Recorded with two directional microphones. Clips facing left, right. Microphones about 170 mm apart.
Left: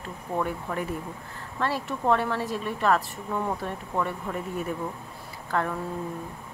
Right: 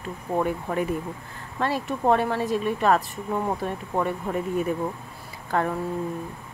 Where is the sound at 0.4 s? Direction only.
20° right (ahead or behind).